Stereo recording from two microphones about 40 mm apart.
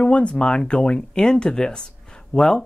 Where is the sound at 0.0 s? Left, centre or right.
Left.